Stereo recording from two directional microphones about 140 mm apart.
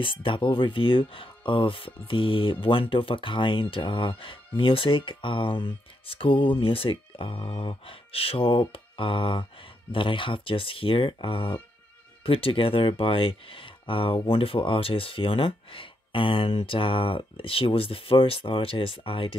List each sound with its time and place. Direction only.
0.0 s speech: 40° left (ahead or behind)